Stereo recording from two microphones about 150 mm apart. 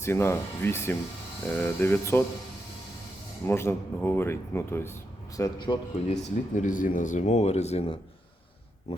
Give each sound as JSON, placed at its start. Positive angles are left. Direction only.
{"t": 0.0, "sound": "speech", "side_deg": 15}
{"t": 3.4, "sound": "speech", "side_deg": 15}
{"t": 5.4, "sound": "a man's voice", "side_deg": 30}
{"t": 6.1, "sound": "speech", "side_deg": 50}